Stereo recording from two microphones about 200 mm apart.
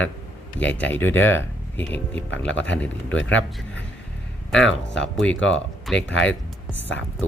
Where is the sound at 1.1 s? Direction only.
80° left.